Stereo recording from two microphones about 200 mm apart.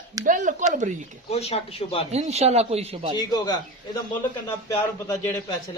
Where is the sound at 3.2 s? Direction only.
20° left (ahead or behind).